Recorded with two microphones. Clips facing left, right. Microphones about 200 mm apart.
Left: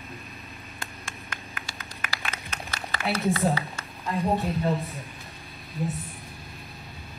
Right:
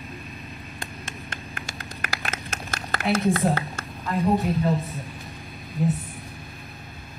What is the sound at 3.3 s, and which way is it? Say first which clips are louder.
Speech: right 2 dB; 50° right (ahead or behind).